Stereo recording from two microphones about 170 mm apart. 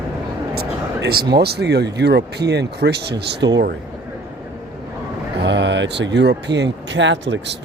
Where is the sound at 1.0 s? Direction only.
70° right (ahead or behind).